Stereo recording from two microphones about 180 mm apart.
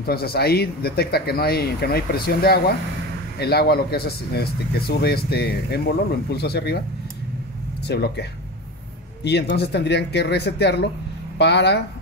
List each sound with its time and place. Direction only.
0.0 s speech: 60° left (ahead or behind)
7.8 s speech: 65° left (ahead or behind)